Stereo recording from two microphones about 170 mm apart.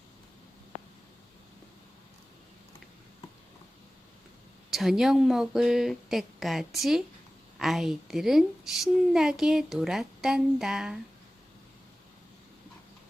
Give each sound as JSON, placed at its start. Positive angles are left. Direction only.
{"t": 4.7, "sound": "speech", "side_deg": 0}